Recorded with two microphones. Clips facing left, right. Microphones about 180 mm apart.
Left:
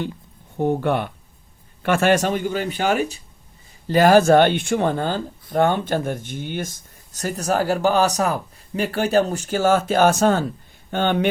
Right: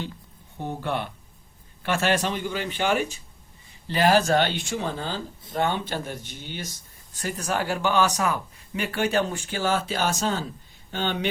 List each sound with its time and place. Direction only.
0.6 s speech: 55° left (ahead or behind)